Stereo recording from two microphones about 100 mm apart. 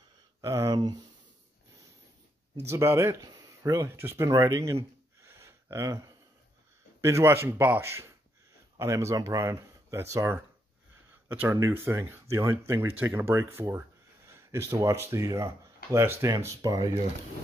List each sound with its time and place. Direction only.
0.4 s speech: 35° right (ahead or behind)
2.6 s speech: 25° right (ahead or behind)
5.2 s a sound: 30° right (ahead or behind)
7.0 s speech: 30° right (ahead or behind)
11.4 s speech: 30° right (ahead or behind)